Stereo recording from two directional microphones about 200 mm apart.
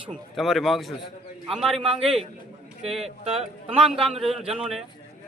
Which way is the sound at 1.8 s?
30° right (ahead or behind).